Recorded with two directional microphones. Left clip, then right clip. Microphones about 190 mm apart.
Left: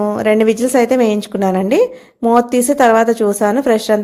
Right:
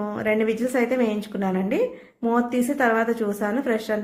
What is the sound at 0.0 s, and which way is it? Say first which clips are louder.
Speech: left 10 dB; 35° left (ahead or behind).